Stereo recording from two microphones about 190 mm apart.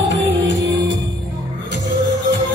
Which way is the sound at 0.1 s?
70° right (ahead or behind).